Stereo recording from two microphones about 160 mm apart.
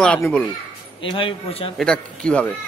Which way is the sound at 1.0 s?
30° left (ahead or behind).